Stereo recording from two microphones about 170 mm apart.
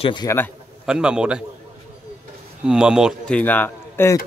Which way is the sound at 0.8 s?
5° right (ahead or behind).